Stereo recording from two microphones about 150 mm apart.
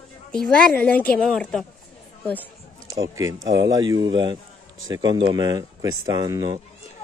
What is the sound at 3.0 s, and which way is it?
Speech, 25° right (ahead or behind).